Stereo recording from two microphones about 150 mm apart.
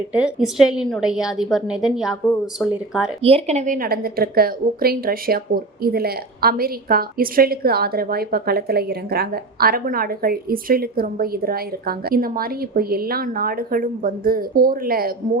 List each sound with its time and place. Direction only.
0.1 s a woman's voice: 5° right (ahead or behind)
3.2 s speech: 40° right (ahead or behind)
3.8 s a woman's voice: 90° right